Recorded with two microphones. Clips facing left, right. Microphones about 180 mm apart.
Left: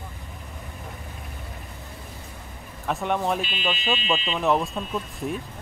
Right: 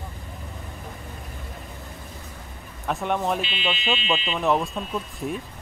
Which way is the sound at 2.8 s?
Centre (ahead or behind).